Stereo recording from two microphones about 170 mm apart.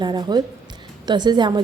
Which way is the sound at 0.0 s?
25° right (ahead or behind).